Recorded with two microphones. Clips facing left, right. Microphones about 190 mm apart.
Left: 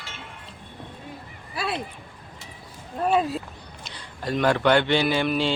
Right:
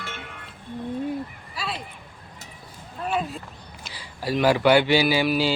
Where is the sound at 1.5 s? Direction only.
55° left (ahead or behind).